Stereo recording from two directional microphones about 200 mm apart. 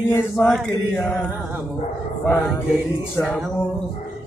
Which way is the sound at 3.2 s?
15° left (ahead or behind).